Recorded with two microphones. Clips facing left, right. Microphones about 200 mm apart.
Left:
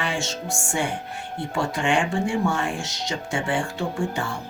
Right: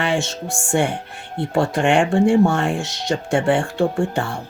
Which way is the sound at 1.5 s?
60° right (ahead or behind).